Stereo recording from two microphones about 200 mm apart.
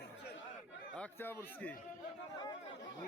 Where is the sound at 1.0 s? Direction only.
10° left (ahead or behind).